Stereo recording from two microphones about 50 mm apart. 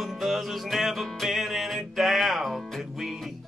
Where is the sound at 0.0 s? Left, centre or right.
Centre.